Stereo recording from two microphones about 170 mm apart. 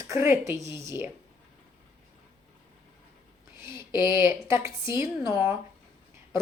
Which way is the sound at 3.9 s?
15° right (ahead or behind).